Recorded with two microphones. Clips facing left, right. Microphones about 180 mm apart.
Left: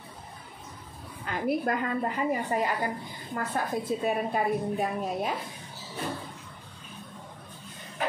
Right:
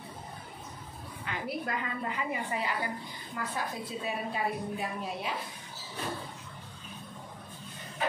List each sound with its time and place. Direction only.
1.2 s a woman's voice: 45° left (ahead or behind)